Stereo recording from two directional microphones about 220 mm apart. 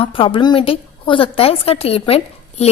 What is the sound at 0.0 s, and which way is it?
A woman's voice, 25° left (ahead or behind).